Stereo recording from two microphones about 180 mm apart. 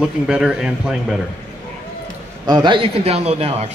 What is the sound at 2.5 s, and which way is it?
A man's voice, 25° right (ahead or behind).